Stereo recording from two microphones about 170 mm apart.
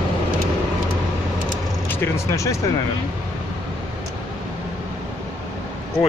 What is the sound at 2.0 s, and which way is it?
Speech, 15° left (ahead or behind).